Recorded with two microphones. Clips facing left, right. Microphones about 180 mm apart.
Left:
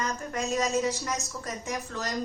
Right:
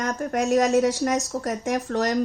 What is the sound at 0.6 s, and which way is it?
A woman's voice, 80° right.